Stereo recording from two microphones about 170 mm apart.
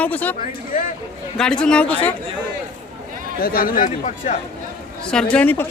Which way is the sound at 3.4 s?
60° left (ahead or behind).